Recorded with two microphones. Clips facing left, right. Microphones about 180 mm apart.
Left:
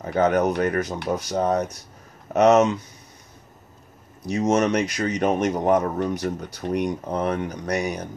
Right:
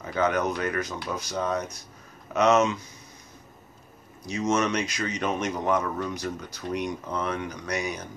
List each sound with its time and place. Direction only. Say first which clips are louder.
0.0 s a man's voice: left 5 dB; 45° left (ahead or behind)
4.3 s a man's voice: left 5 dB; 40° left (ahead or behind)
7.1 s a man's voice: left 5 dB; 45° left (ahead or behind)